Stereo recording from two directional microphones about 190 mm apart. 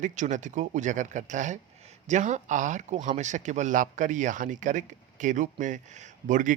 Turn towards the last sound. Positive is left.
turn(degrees=-40)  # may be behind; listen again after turning